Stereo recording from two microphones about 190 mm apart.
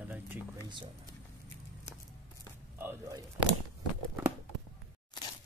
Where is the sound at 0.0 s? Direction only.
10° right (ahead or behind).